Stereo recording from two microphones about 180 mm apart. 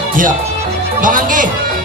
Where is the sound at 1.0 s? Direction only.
45° right (ahead or behind).